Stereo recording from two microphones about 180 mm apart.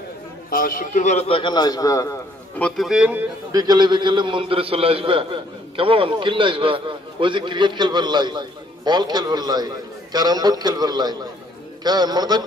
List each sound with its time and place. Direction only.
0.5 s a man's voice: 50° left (ahead or behind); by 2.1 s 20° left (ahead or behind)
2.6 s a man's voice: centre (ahead or behind)
3.5 s a man's voice: 20° right (ahead or behind)